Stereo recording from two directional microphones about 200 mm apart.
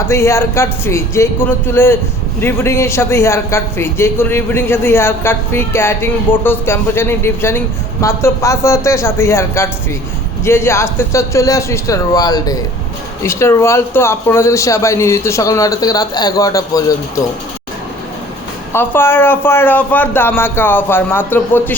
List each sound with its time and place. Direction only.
0.1 s a man's voice: 15° left (ahead or behind)
18.7 s a man's voice: 10° left (ahead or behind)